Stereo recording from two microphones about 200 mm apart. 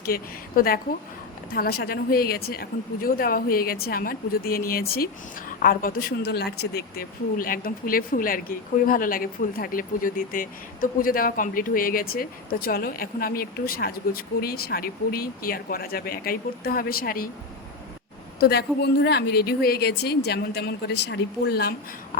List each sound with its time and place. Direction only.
0.0 s speech: 45° left (ahead or behind)
18.3 s speech: 55° left (ahead or behind)